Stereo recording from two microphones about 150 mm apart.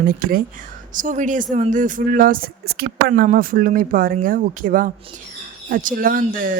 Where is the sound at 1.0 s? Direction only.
60° right (ahead or behind); by 2.8 s 80° right.